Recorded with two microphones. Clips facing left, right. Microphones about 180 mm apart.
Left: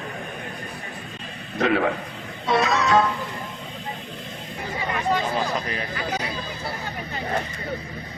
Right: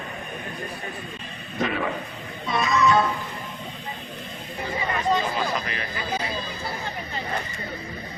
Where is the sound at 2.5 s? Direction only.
85° left.